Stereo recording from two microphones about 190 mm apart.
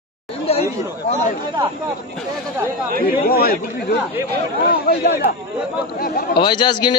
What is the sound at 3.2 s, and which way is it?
Speech, 55° left (ahead or behind).